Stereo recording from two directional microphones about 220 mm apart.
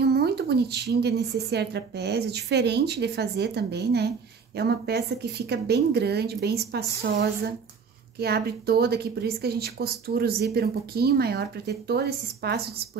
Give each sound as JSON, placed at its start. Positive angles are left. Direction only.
{"t": 0.0, "sound": "speech", "side_deg": -45}
{"t": 8.2, "sound": "speech", "side_deg": -45}